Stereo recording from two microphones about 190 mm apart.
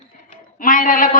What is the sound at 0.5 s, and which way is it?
Speech, 45° left (ahead or behind).